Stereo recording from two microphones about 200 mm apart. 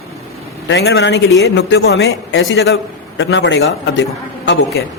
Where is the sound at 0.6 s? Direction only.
60° left (ahead or behind).